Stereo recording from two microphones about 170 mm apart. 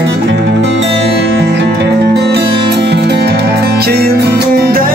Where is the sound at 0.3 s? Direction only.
90° right.